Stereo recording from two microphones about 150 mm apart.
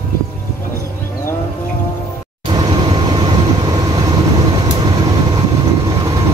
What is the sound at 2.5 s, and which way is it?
Vehicle, 30° right (ahead or behind).